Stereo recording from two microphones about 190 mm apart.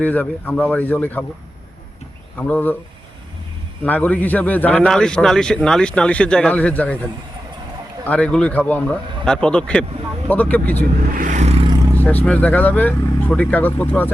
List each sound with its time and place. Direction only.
0.0 s a man's voice: 10° left (ahead or behind)
2.4 s a man's voice: 10° left (ahead or behind)
3.8 s a man's voice: 10° left (ahead or behind)
8.0 s a man's voice: 5° left (ahead or behind)
11.1 s vehicle: 45° right (ahead or behind)
11.9 s a man's voice: 10° left (ahead or behind)